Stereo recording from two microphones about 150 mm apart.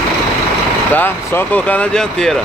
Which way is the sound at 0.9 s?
10° left (ahead or behind).